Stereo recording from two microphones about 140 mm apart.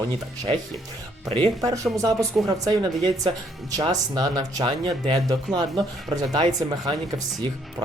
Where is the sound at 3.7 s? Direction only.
30° right (ahead or behind).